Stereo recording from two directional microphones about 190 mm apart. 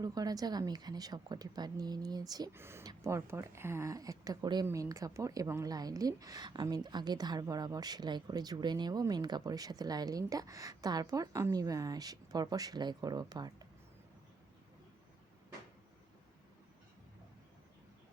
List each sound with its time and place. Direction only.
0.0 s a woman's voice: 20° right (ahead or behind)